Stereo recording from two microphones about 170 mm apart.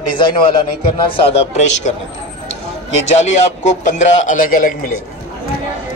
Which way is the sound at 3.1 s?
40° left (ahead or behind).